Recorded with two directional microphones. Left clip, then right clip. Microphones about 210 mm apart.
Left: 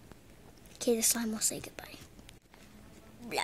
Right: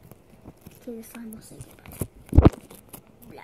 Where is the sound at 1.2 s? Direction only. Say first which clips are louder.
Left 8 dB; 50° left (ahead or behind).